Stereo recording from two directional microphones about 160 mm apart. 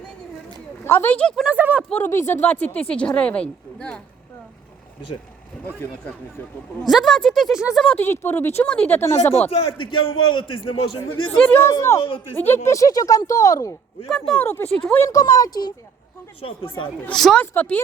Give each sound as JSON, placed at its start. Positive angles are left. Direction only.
{"t": 0.9, "sound": "speech", "side_deg": 15}
{"t": 1.5, "sound": "speech", "side_deg": -10}
{"t": 1.9, "sound": "speech", "side_deg": 15}
{"t": 5.6, "sound": "speech", "side_deg": 10}
{"t": 6.8, "sound": "speech", "side_deg": 0}
{"t": 7.9, "sound": "speech", "side_deg": 15}
{"t": 10.4, "sound": "a man's voice", "side_deg": 30}
{"t": 11.1, "sound": "speech", "side_deg": 10}
{"t": 11.7, "sound": "speech", "side_deg": 20}
{"t": 11.9, "sound": "a man's voice", "side_deg": 35}
{"t": 12.3, "sound": "speech", "side_deg": 15}
{"t": 14.1, "sound": "speech", "side_deg": 0}
{"t": 14.4, "sound": "speech", "side_deg": 15}
{"t": 17.0, "sound": "speech", "side_deg": 5}